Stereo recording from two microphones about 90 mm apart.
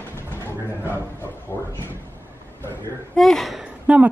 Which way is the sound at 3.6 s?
15° right (ahead or behind).